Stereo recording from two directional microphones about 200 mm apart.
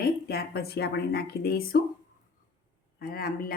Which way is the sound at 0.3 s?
50° left (ahead or behind).